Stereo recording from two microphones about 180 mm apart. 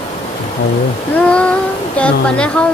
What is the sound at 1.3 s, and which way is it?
Child singing, 5° left (ahead or behind).